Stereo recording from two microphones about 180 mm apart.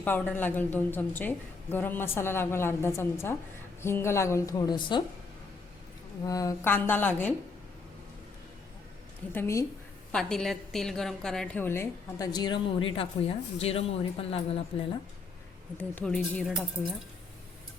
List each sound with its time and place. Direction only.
0.0 s a woman's voice: 10° left (ahead or behind); by 5.0 s 25° left (ahead or behind)
6.2 s a woman's voice: 20° left (ahead or behind)
9.3 s a woman's voice: 15° left (ahead or behind)
10.1 s a woman's voice: 5° left (ahead or behind); by 14.6 s 35° left (ahead or behind)
15.8 s a woman's voice: 5° left (ahead or behind)